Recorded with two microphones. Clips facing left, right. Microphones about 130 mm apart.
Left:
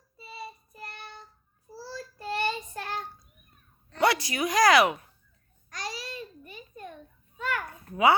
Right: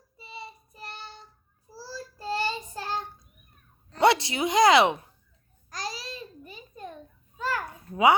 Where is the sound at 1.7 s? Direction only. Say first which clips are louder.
Even; 30° right (ahead or behind).